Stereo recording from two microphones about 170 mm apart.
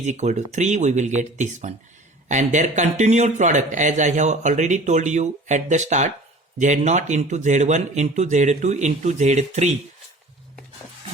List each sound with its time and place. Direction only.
0.0 s speech: 45° right (ahead or behind)